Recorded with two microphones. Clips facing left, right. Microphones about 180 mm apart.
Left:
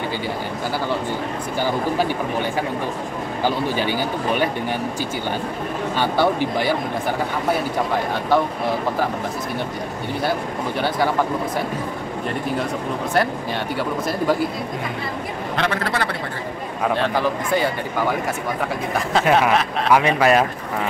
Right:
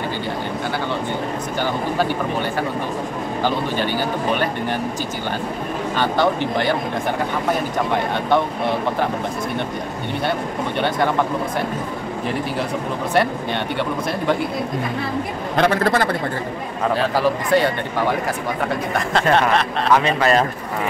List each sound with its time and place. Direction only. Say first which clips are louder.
3.4 s speech: left 1 dB; 10° left (ahead or behind)
5.9 s speech: even; 10° left (ahead or behind)
15.5 s speech: right 6 dB; 40° right (ahead or behind)
16.9 s speech: right 3 dB; 5° right (ahead or behind)